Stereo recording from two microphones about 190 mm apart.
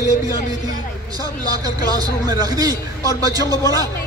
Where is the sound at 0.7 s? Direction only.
20° right (ahead or behind).